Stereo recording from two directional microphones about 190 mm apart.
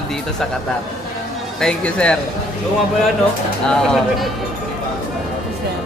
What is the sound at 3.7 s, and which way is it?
Speech, centre (ahead or behind).